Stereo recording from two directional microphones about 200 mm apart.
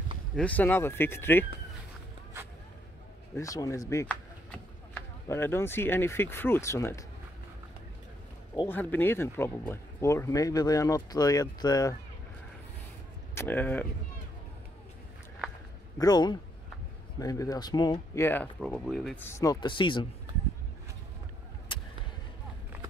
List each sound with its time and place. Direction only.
0.4 s speech: 10° left (ahead or behind)
3.3 s speech: 15° left (ahead or behind)
8.5 s speech: 10° left (ahead or behind)
13.3 s speech: 10° left (ahead or behind)
16.0 s speech: 20° left (ahead or behind); by 19.1 s centre (ahead or behind)
19.1 s speech: 10° left (ahead or behind)
21.7 s a sound: 25° left (ahead or behind)